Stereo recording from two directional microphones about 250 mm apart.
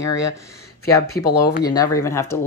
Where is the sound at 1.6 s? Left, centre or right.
Centre.